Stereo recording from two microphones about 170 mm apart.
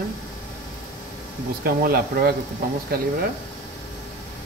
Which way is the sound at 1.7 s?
65° right (ahead or behind).